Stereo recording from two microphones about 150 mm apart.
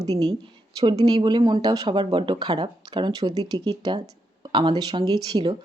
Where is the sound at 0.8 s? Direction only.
35° right (ahead or behind).